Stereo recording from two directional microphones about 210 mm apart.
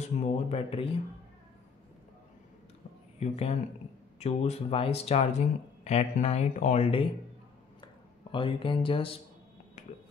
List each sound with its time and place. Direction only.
0.0 s speech: 30° left (ahead or behind)
3.2 s speech: 30° left (ahead or behind)
7.8 s a sound: 25° left (ahead or behind)